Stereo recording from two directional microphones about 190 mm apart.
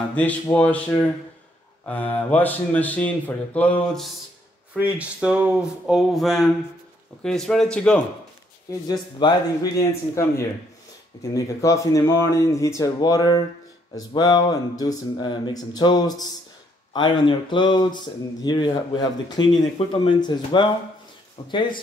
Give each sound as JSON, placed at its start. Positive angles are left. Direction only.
{"t": 0.1, "sound": "speech", "side_deg": 10}
{"t": 4.7, "sound": "speech", "side_deg": -5}
{"t": 8.8, "sound": "speech", "side_deg": 20}